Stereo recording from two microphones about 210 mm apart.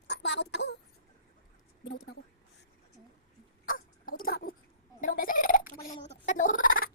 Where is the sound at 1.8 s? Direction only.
50° left (ahead or behind).